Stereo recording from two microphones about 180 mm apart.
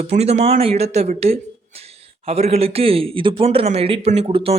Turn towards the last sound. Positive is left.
turn(degrees=-30)  # may be behind; listen again after turning